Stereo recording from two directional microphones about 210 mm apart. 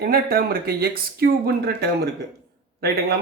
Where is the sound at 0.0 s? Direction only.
45° right (ahead or behind).